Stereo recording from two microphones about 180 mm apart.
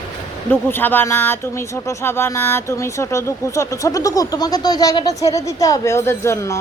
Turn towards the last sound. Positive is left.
turn(degrees=15)  # may be behind; listen again after turning